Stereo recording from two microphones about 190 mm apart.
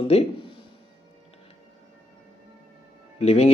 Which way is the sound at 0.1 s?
35° left (ahead or behind).